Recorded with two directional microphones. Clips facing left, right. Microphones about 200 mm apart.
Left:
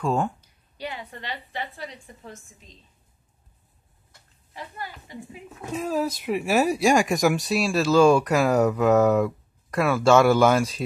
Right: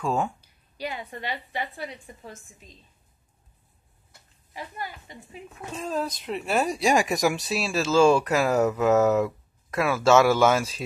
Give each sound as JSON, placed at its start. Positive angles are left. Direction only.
{"t": 0.0, "sound": "speech", "side_deg": 0}
{"t": 0.7, "sound": "a woman's voice", "side_deg": -10}
{"t": 4.1, "sound": "a sound", "side_deg": -10}
{"t": 5.7, "sound": "speech", "side_deg": 10}